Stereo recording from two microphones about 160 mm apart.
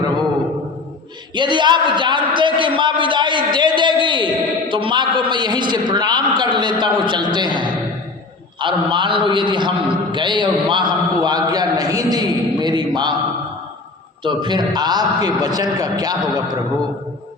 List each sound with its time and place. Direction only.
1.4 s a man's voice: 30° right (ahead or behind)
14.3 s a man's voice: 30° right (ahead or behind)